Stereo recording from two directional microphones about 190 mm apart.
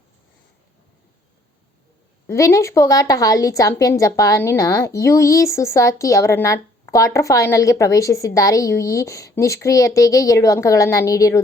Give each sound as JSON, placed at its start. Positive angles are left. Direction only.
{"t": 2.2, "sound": "a woman's voice", "side_deg": 15}